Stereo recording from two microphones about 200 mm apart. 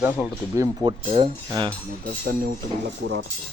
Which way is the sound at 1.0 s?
30° right (ahead or behind).